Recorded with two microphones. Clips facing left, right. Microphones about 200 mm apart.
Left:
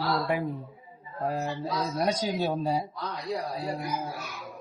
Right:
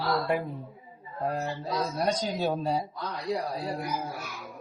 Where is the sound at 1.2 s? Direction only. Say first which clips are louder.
Left 1 dB; centre (ahead or behind).